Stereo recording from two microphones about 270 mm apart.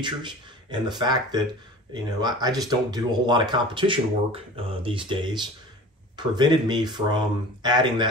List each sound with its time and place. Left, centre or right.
0.0 s speech: centre